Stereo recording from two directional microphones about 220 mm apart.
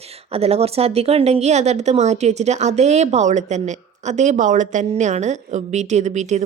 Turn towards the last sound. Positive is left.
turn(degrees=-30)  # may be behind; listen again after turning